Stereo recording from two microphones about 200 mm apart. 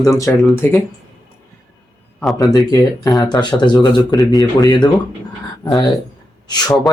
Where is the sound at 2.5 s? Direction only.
20° left (ahead or behind).